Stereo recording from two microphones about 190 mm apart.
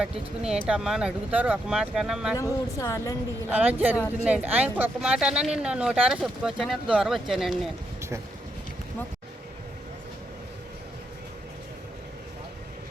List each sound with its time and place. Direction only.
0.0 s speech: 5° right (ahead or behind)
2.3 s a woman's voice: 15° left (ahead or behind)
3.5 s speech: 10° right (ahead or behind)